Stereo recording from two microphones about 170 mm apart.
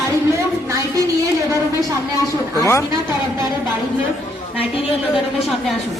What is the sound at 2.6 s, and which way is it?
Speech, 15° left (ahead or behind).